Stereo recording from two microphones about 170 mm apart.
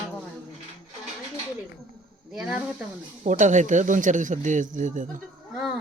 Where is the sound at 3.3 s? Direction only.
45° right (ahead or behind).